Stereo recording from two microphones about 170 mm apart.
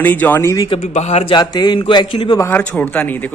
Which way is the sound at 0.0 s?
10° left (ahead or behind).